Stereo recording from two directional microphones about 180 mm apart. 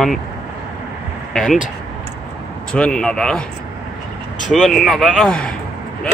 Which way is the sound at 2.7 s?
5° left (ahead or behind).